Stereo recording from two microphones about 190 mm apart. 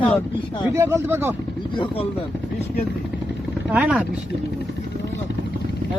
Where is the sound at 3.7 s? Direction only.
5° right (ahead or behind).